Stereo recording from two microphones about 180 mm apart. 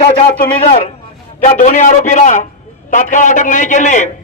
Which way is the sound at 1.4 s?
45° left (ahead or behind).